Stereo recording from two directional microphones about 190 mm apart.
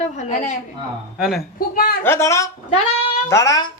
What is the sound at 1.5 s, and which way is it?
Speech, 50° left (ahead or behind).